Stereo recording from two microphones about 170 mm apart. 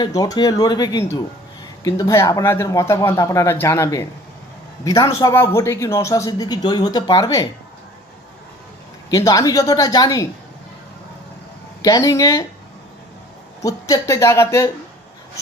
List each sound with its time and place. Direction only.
0.0 s speech: 20° left (ahead or behind)
9.0 s speech: 20° left (ahead or behind)
11.8 s speech: 20° left (ahead or behind)
13.6 s speech: 20° left (ahead or behind)